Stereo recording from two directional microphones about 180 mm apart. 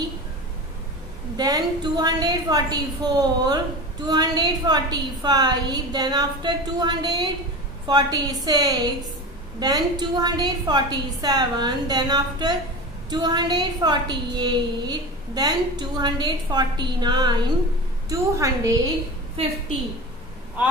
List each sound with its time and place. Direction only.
1.3 s a woman's voice: 20° right (ahead or behind)